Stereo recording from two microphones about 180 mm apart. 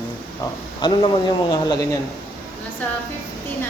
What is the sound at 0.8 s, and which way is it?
Speech, 25° left (ahead or behind).